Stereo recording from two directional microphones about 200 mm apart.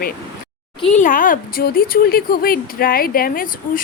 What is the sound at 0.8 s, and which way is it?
A woman's voice, 35° left (ahead or behind).